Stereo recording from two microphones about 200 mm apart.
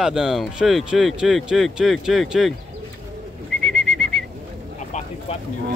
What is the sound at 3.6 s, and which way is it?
Bird, centre (ahead or behind).